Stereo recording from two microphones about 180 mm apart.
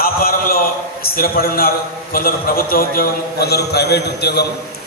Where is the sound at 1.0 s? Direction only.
55° left (ahead or behind).